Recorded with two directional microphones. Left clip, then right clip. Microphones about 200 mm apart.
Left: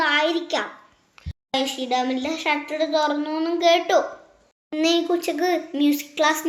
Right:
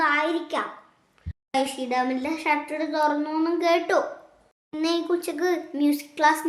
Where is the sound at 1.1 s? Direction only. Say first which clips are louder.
Left 6 dB; 20° left (ahead or behind).